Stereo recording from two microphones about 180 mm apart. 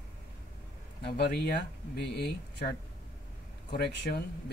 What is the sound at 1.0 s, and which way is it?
Speech, 70° left (ahead or behind).